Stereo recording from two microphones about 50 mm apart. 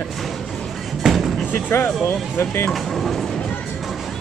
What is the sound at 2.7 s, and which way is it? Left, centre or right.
Train, centre.